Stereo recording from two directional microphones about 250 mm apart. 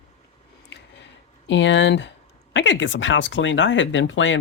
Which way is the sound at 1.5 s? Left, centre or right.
Left.